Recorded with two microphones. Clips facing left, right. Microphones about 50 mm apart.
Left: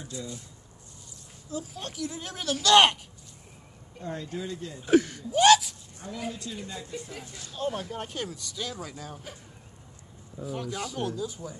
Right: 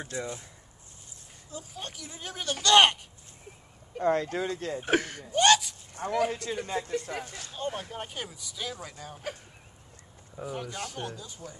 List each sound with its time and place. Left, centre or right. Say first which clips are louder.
0.0 s speech: right 3 dB; right
1.5 s speech: left 4 dB; centre
4.0 s speech: right 8 dB; right
4.8 s speech: left 6 dB; right
5.3 s a sound: left 3 dB; centre
6.1 s speech: right 8 dB; right
7.5 s speech: left 3 dB; centre
10.4 s speech: left 2 dB; centre